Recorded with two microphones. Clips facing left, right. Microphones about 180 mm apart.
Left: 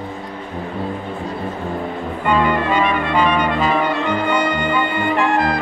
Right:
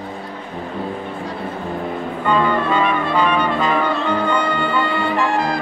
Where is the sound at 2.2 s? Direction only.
15° left (ahead or behind).